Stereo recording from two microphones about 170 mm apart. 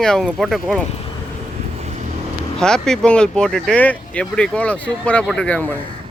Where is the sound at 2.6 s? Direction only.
5° left (ahead or behind).